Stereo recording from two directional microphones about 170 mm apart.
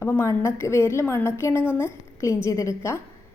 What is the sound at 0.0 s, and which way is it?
A woman's voice, 15° left (ahead or behind).